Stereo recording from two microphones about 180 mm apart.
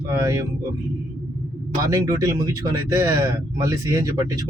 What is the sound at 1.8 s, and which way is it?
Speech, 20° right (ahead or behind).